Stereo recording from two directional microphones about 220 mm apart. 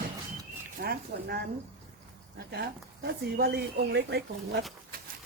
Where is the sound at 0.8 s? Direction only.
45° right (ahead or behind).